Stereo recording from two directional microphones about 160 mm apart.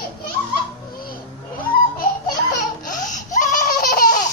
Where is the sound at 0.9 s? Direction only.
65° left (ahead or behind).